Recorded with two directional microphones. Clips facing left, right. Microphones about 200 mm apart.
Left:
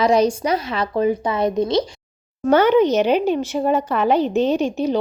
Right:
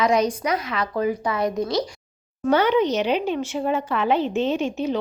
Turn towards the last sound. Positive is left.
turn(degrees=35)  # may be behind; listen again after turning